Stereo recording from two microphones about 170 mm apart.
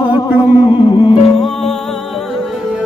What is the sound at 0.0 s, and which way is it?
Music, 25° left (ahead or behind).